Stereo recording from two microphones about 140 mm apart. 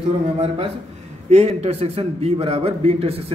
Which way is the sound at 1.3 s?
50° right (ahead or behind).